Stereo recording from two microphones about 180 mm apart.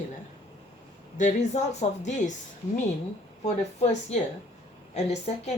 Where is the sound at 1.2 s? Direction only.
40° left (ahead or behind).